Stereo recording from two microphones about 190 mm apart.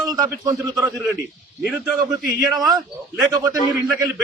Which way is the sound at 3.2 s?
20° right (ahead or behind).